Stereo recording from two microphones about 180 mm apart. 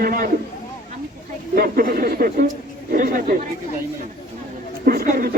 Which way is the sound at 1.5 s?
55° right (ahead or behind).